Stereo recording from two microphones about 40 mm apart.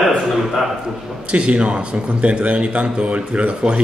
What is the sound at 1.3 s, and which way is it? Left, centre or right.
Speech, right.